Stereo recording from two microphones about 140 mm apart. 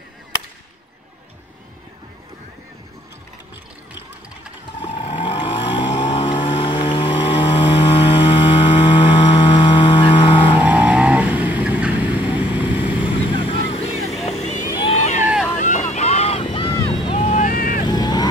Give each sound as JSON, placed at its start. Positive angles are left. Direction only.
{"t": 4.8, "sound": "vehicle", "side_deg": 40}
{"t": 10.4, "sound": "vehicle", "side_deg": -10}
{"t": 12.9, "sound": "vehicle", "side_deg": 40}
{"t": 15.5, "sound": "boat", "side_deg": 60}
{"t": 16.4, "sound": "vehicle", "side_deg": 40}
{"t": 17.2, "sound": "vehicle", "side_deg": 55}
{"t": 17.5, "sound": "vehicle", "side_deg": 90}
{"t": 17.8, "sound": "vehicle", "side_deg": 30}